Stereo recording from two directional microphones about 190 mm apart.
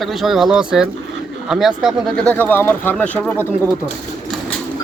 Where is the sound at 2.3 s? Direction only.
10° left (ahead or behind).